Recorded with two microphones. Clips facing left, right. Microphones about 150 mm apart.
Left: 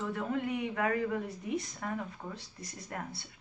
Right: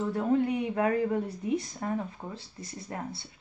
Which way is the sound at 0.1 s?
35° right (ahead or behind).